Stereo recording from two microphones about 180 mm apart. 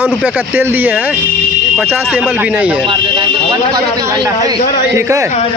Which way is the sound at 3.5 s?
20° right (ahead or behind).